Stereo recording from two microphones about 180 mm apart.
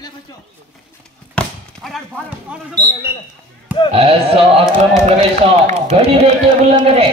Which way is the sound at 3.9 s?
35° right (ahead or behind).